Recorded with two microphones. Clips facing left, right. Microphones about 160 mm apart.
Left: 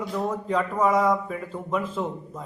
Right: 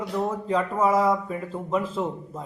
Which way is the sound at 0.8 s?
30° right (ahead or behind).